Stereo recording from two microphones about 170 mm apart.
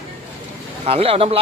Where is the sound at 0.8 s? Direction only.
35° right (ahead or behind).